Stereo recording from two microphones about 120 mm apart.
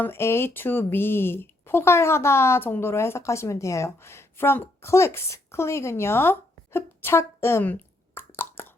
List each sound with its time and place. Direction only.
0.0 s speech: 20° left (ahead or behind)
6.7 s plop: 20° left (ahead or behind)